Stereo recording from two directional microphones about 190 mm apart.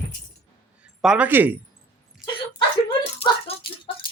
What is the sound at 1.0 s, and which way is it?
Speech, 5° right (ahead or behind).